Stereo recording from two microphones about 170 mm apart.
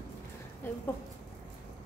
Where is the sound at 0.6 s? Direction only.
15° left (ahead or behind).